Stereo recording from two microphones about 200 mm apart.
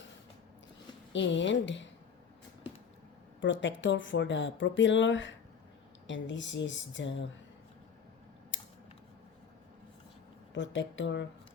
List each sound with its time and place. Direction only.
1.1 s speech: 65° left (ahead or behind)
3.4 s speech: 65° left (ahead or behind)
8.5 s a sound: 65° left (ahead or behind)
10.5 s speech: 65° left (ahead or behind)